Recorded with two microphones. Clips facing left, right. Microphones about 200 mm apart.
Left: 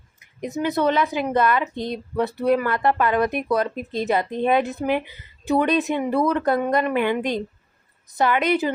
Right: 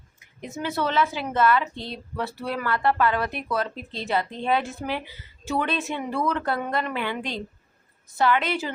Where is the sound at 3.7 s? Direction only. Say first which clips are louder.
Left 9 dB; 50° left (ahead or behind).